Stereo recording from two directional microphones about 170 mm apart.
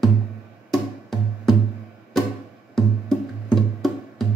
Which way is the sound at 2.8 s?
Centre (ahead or behind).